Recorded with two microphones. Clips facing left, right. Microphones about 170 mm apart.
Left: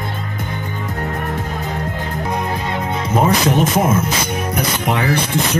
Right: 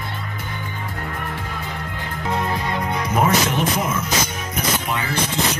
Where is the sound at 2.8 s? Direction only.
25° left (ahead or behind).